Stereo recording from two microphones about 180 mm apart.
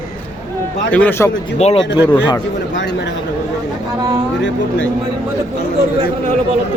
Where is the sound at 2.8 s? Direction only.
75° left (ahead or behind).